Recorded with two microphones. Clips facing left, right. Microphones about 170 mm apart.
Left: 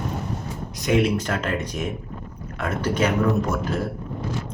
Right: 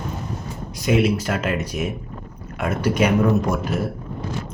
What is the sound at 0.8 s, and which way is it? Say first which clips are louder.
Speech: right 2 dB; 5° right (ahead or behind).